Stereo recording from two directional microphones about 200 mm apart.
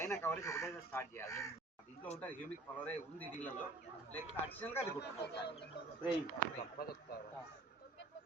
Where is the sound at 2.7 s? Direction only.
10° left (ahead or behind).